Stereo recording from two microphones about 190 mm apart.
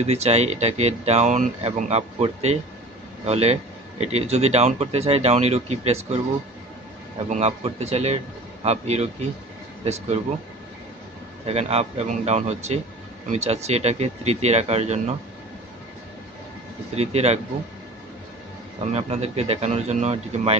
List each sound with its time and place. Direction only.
0.0 s speech: 35° right (ahead or behind)
7.2 s speech: 35° right (ahead or behind)
11.4 s speech: 35° right (ahead or behind)
16.9 s speech: 35° right (ahead or behind)
18.9 s speech: 35° right (ahead or behind)